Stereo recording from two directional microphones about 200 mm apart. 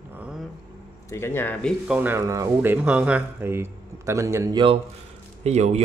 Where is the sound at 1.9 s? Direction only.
10° right (ahead or behind).